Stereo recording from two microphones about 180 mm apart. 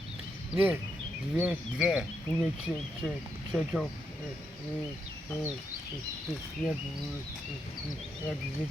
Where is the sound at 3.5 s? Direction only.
Centre (ahead or behind).